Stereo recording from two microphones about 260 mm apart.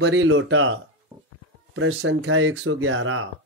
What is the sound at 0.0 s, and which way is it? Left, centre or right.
Speech, right.